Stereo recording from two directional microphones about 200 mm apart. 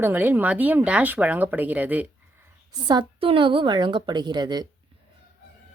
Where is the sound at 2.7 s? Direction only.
20° right (ahead or behind).